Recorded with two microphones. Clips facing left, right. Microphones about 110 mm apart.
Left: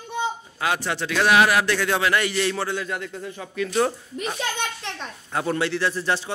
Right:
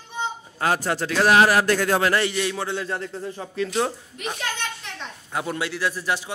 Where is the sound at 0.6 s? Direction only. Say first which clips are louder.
Right 3 dB; 40° right (ahead or behind).